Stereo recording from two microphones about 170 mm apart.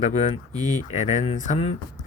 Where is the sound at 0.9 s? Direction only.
45° left (ahead or behind).